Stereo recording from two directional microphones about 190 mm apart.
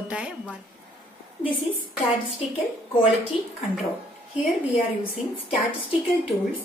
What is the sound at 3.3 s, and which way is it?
Speech, 30° left (ahead or behind).